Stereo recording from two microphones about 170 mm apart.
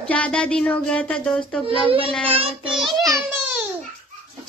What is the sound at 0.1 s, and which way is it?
Speech, 5° left (ahead or behind).